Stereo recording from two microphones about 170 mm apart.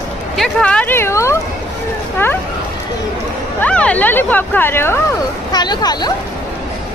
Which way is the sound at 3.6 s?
5° left (ahead or behind).